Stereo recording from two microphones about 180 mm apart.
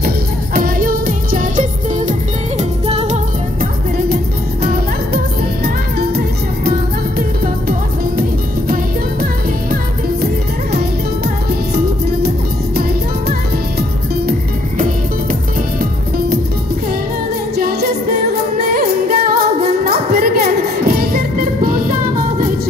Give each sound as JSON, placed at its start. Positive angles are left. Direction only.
{"t": 0.6, "sound": "music", "side_deg": -50}
{"t": 2.9, "sound": "music", "side_deg": -35}
{"t": 5.9, "sound": "music", "side_deg": -60}
{"t": 17.6, "sound": "music", "side_deg": -55}